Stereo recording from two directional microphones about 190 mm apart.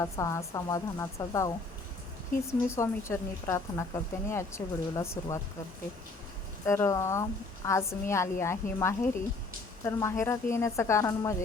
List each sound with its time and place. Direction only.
0.0 s a woman's voice: 15° left (ahead or behind)
2.5 s a woman's voice: 15° left (ahead or behind)
6.7 s a woman's voice: 15° left (ahead or behind)